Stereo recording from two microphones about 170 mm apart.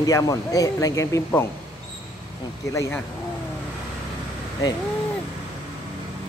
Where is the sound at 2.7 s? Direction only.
15° left (ahead or behind).